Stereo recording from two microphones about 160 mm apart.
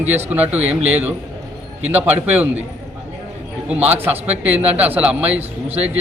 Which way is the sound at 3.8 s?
10° right (ahead or behind).